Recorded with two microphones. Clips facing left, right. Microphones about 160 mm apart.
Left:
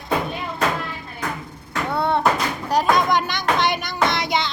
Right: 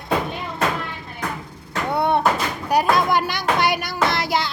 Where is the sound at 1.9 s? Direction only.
15° right (ahead or behind).